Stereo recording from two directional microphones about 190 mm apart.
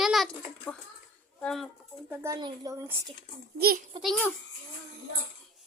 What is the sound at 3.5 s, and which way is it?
Speech, 55° right (ahead or behind).